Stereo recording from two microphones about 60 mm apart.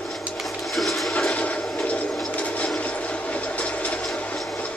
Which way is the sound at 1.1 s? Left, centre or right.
Centre.